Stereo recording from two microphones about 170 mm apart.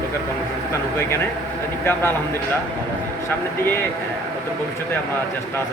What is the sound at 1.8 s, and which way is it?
Speech, 15° left (ahead or behind).